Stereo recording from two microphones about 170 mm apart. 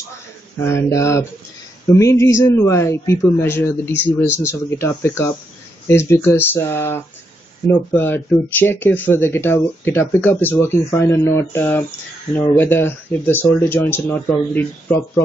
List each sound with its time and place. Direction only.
0.6 s speech: 15° left (ahead or behind)